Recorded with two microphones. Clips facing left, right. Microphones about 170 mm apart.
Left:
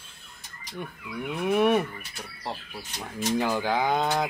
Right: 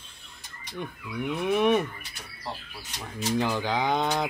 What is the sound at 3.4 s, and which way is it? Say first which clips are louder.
Speech: left 1 dB; 10° left (ahead or behind).